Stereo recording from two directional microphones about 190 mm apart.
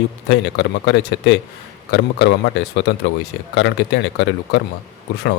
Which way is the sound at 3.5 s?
70° left (ahead or behind).